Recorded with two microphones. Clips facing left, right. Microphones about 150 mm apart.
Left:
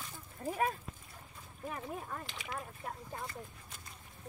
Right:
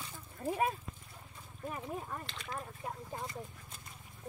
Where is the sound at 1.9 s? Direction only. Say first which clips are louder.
Right 1 dB; 5° right (ahead or behind).